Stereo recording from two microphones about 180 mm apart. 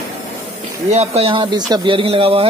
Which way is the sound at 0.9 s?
35° right (ahead or behind).